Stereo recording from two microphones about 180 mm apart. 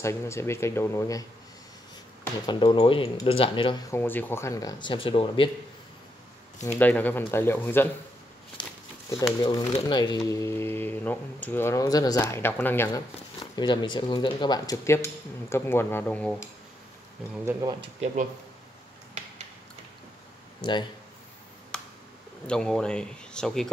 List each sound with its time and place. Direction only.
0.0 s speech: 15° left (ahead or behind)
2.4 s speech: 25° left (ahead or behind)
3.9 s speech: 10° left (ahead or behind); by 5.5 s 30° left (ahead or behind)
6.8 s speech: 10° left (ahead or behind)
8.6 s a sound: 25° left (ahead or behind)
9.4 s speech: 20° left (ahead or behind)
13.4 s speech: 25° left (ahead or behind); by 16.4 s 10° left (ahead or behind)
17.5 s speech: 15° right (ahead or behind)
20.6 s speech: 25° left (ahead or behind)
22.5 s speech: 5° left (ahead or behind)